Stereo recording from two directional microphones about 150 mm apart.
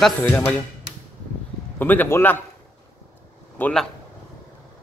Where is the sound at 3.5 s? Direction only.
10° left (ahead or behind).